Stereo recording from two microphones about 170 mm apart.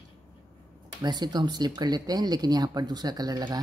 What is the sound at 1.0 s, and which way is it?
Speech, 25° right (ahead or behind).